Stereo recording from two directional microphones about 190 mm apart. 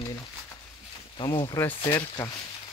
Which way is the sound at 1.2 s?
20° left (ahead or behind).